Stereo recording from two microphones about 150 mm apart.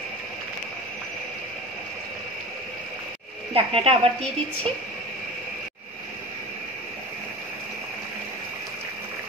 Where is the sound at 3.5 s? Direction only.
40° right (ahead or behind).